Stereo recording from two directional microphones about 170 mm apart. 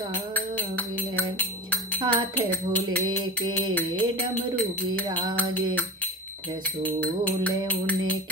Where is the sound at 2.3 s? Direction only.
10° left (ahead or behind).